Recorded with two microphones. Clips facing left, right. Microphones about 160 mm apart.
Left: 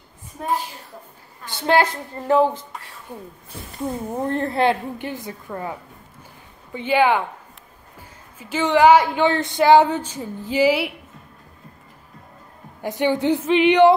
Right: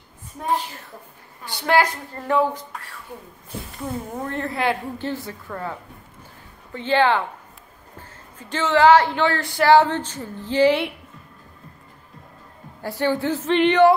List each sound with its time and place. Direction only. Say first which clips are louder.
1.5 s a woman's voice: left 1 dB; 20° left (ahead or behind)
3.8 s a woman's voice: left 5 dB; 30° left (ahead or behind)
4.9 s speech: right 2 dB; 15° left (ahead or behind)
8.4 s speech: left 1 dB; 10° left (ahead or behind)
12.8 s speech: left 2 dB; 20° left (ahead or behind)